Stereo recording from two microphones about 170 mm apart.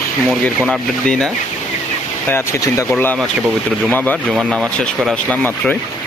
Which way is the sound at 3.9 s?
10° left (ahead or behind).